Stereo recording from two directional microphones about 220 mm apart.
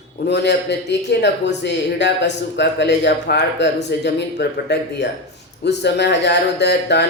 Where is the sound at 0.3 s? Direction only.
50° left (ahead or behind).